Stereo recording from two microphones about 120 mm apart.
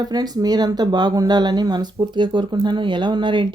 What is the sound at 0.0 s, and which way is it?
Speech, 35° right (ahead or behind).